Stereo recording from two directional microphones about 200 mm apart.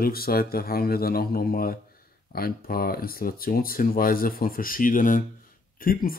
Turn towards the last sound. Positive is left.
turn(degrees=45)  # may be behind; listen again after turning